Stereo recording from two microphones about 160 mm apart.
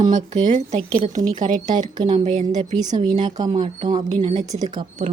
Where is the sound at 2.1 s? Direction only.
45° right (ahead or behind).